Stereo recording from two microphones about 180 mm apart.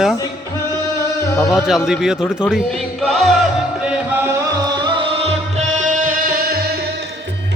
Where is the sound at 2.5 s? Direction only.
Centre (ahead or behind); by 6.6 s 50° right (ahead or behind).